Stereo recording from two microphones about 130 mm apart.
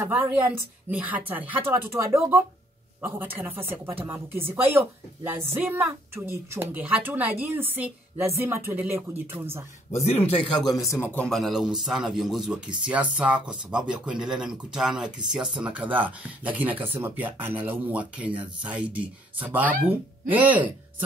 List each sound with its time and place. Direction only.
0.0 s a woman's voice: 15° right (ahead or behind)
10.0 s speech: 45° left (ahead or behind)
10.9 s a man's voice: 20° left (ahead or behind)
11.2 s a man's voice: centre (ahead or behind)